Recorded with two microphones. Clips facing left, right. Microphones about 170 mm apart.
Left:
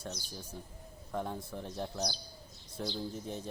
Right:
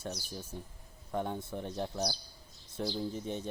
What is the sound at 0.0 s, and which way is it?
A man's voice, 5° right (ahead or behind).